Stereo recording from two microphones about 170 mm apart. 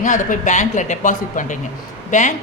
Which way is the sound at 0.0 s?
50° left (ahead or behind).